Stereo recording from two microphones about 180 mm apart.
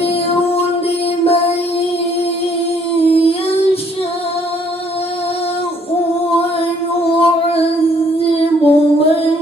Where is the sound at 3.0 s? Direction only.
30° left (ahead or behind).